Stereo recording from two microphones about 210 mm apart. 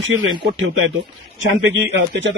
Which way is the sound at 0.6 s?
65° right (ahead or behind).